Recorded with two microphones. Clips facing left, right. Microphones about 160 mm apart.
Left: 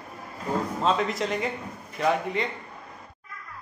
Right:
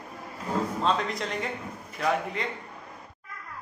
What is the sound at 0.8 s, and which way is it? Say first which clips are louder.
A man's voice: left 6 dB; 5° left (ahead or behind).